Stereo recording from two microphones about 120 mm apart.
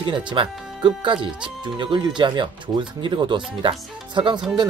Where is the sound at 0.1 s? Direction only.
45° right (ahead or behind).